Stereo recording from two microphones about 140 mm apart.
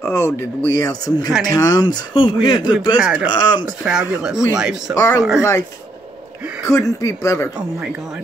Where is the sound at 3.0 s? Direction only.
10° right (ahead or behind).